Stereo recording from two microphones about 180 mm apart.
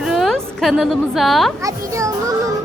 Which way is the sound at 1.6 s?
20° right (ahead or behind).